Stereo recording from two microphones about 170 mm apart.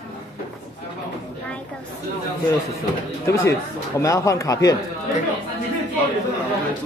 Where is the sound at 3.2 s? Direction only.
15° left (ahead or behind).